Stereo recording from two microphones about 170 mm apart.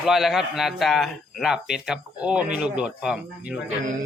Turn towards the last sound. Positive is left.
turn(degrees=-5)  # may be behind; listen again after turning